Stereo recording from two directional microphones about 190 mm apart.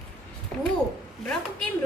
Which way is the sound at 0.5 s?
5° left (ahead or behind).